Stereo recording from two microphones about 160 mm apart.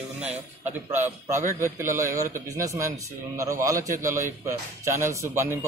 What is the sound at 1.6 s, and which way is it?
A man's voice, 15° right (ahead or behind).